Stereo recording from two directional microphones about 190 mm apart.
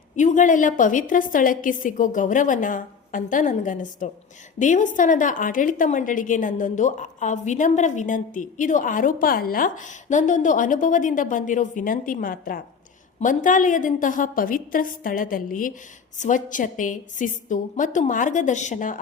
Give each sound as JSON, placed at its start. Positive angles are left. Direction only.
{"t": 0.2, "sound": "a woman's voice", "side_deg": 40}